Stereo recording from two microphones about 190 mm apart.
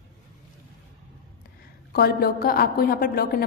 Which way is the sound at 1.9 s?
55° left (ahead or behind).